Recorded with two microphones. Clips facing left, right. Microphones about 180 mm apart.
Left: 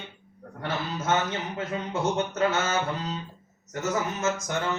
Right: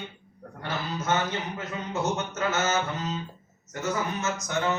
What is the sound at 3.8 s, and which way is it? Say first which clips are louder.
Speech: left 1 dB; 40° left (ahead or behind).